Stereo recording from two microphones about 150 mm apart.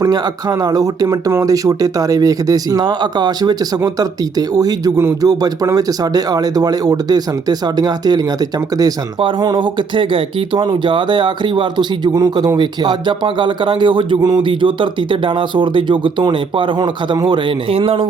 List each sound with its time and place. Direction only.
0.0 s speech: 25° right (ahead or behind)